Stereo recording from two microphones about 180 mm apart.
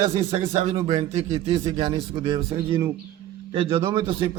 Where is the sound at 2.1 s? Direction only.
30° right (ahead or behind).